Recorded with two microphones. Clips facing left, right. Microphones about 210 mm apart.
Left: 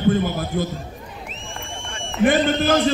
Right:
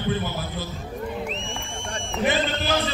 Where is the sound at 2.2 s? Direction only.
35° right (ahead or behind).